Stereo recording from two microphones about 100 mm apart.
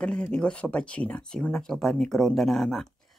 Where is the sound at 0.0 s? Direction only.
10° left (ahead or behind).